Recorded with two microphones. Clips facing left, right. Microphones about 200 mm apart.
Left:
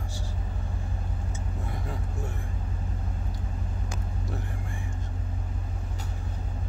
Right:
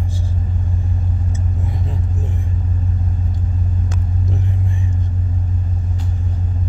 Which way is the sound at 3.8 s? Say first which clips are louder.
Right 10 dB; 20° right (ahead or behind).